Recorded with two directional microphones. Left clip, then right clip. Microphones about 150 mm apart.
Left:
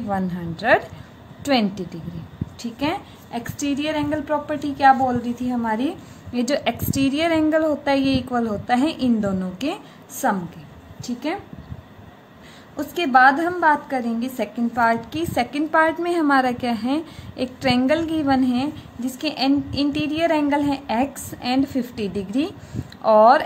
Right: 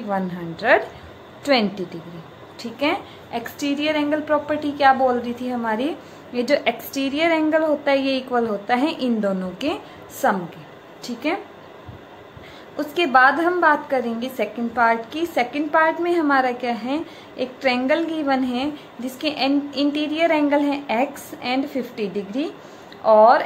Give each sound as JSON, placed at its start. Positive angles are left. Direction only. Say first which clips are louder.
{"t": 0.1, "sound": "a woman's voice", "louder": "right 2 dB", "side_deg": 40}
{"t": 12.7, "sound": "a woman's voice", "louder": "even", "side_deg": 40}